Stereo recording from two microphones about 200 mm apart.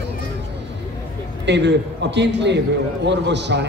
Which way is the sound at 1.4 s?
60° right (ahead or behind).